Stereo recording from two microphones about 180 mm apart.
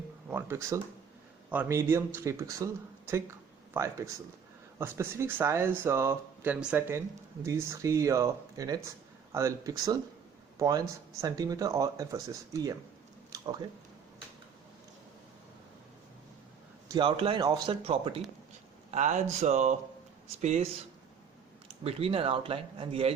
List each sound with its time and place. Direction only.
0.3 s speech: 10° right (ahead or behind)
3.8 s speech: 20° right (ahead or behind)
16.9 s speech: 30° right (ahead or behind)
21.8 s speech: 30° right (ahead or behind)